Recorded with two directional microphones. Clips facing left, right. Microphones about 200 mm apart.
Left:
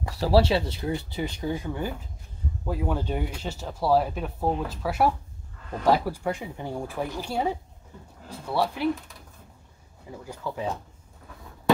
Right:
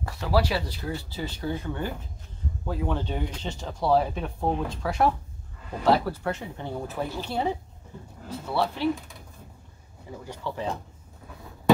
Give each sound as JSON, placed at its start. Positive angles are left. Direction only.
{"t": 0.2, "sound": "speech", "side_deg": 30}
{"t": 10.2, "sound": "speech", "side_deg": 5}